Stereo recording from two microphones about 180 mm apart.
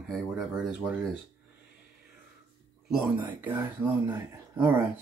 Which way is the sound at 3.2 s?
10° right (ahead or behind).